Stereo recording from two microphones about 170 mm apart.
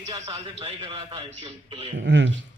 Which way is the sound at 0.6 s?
35° right (ahead or behind).